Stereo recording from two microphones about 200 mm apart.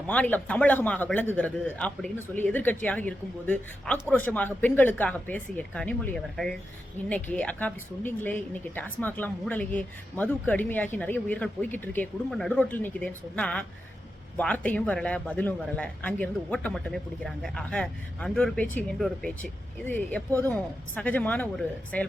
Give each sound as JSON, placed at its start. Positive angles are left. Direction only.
{"t": 0.1, "sound": "a woman's voice", "side_deg": 10}